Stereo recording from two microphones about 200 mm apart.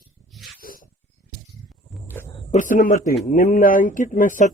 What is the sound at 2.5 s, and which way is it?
Speech, 40° left (ahead or behind).